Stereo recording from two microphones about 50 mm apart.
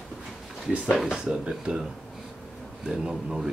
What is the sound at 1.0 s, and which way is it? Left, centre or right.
Speech, centre.